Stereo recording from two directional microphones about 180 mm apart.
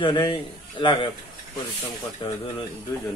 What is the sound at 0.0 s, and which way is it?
A man's voice, 25° left (ahead or behind).